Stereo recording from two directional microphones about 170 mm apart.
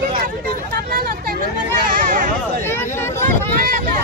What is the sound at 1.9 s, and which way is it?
Speech, 55° right (ahead or behind).